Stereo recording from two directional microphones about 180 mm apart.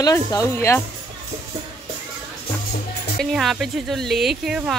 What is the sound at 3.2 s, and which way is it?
Speech, centre (ahead or behind).